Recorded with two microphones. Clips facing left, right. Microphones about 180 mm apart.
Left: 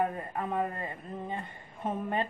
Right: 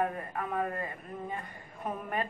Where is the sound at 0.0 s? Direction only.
25° left (ahead or behind).